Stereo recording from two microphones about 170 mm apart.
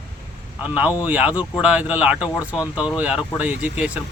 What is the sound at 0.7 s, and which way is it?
Speech, 10° right (ahead or behind).